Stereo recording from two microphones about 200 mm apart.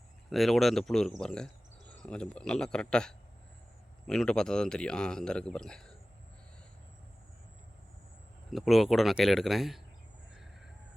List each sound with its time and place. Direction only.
0.3 s speech: centre (ahead or behind)
8.4 s speech: centre (ahead or behind)